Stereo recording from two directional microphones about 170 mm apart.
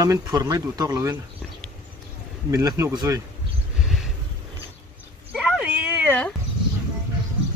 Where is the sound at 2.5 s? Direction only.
20° right (ahead or behind).